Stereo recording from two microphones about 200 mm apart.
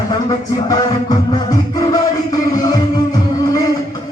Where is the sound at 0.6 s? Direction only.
20° left (ahead or behind).